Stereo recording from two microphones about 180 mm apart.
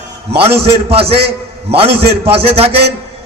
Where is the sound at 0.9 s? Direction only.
35° right (ahead or behind).